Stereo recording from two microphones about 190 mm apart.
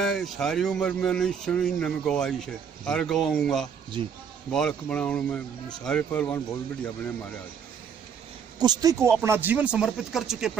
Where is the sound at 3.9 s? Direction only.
25° right (ahead or behind).